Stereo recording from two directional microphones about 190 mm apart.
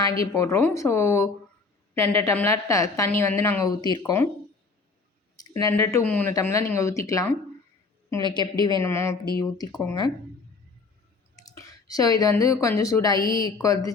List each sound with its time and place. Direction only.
0.3 s a woman's voice: 15° left (ahead or behind)
5.4 s a woman's voice: 20° left (ahead or behind)
11.3 s a woman's voice: 15° left (ahead or behind)